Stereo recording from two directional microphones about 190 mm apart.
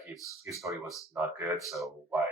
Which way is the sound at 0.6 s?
15° right (ahead or behind).